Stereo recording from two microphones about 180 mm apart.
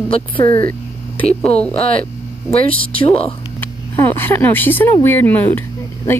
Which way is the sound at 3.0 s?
35° left (ahead or behind).